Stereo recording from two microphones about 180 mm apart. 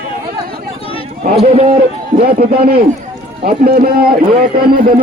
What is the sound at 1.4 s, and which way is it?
Speech, 35° right (ahead or behind).